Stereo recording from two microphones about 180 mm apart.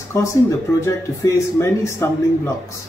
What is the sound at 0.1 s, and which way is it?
Speech, 15° left (ahead or behind).